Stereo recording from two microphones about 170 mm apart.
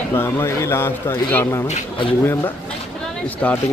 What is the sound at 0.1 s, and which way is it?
A man's voice, 15° left (ahead or behind).